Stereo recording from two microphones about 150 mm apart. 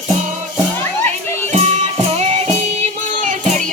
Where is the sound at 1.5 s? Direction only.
45° right (ahead or behind).